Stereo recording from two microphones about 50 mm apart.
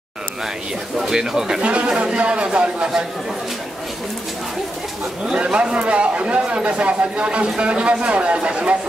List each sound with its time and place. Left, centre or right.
0.9 s speech: centre
1.6 s a man's voice: right
5.2 s a man's voice: centre